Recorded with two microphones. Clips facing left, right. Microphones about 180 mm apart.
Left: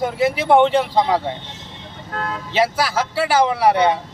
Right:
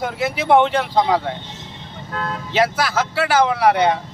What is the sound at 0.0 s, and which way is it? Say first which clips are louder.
Speech: left 3 dB; centre (ahead or behind).